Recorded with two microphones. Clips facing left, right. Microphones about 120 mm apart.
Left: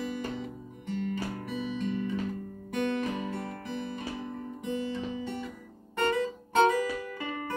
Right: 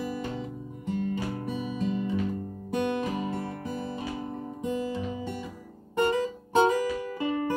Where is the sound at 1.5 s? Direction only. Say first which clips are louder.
Right 1 dB; 40° right (ahead or behind).